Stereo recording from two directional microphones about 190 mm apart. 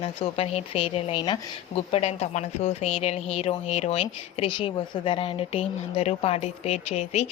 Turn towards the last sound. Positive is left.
turn(degrees=35)  # may be behind; listen again after turning